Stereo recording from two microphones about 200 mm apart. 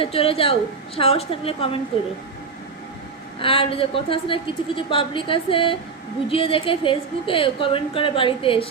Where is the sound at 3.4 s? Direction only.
25° left (ahead or behind).